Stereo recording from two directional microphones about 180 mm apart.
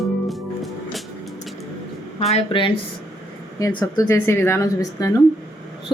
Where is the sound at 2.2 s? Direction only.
35° left (ahead or behind).